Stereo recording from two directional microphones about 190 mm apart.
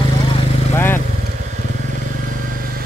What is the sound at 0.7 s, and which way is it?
Vehicle, 10° left (ahead or behind).